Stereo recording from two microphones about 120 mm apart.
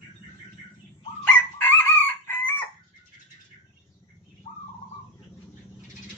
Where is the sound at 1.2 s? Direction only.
15° left (ahead or behind).